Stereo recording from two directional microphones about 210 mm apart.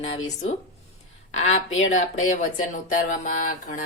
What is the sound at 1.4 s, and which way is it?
A woman's voice, 35° left (ahead or behind).